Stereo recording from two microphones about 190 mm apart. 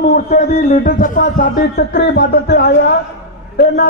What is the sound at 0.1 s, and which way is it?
A man's voice, 45° left (ahead or behind).